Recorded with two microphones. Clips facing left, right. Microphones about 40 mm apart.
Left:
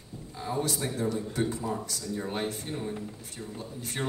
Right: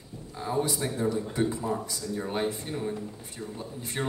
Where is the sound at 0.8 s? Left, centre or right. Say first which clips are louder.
Right 1 dB; centre.